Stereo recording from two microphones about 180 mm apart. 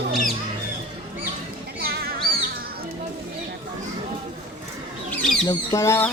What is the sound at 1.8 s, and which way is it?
Music, 60° right (ahead or behind).